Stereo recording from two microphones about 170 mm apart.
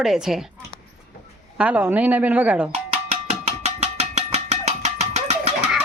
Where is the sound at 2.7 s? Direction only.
40° right (ahead or behind).